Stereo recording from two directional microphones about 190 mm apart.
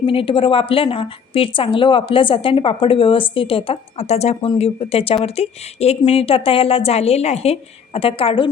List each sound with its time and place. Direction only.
0.0 s a woman's voice: 30° left (ahead or behind)